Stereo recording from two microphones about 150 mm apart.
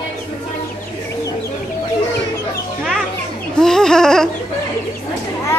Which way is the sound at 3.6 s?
5° left (ahead or behind).